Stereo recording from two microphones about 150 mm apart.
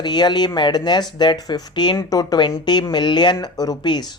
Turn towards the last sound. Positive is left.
turn(degrees=30)  # may be behind; listen again after turning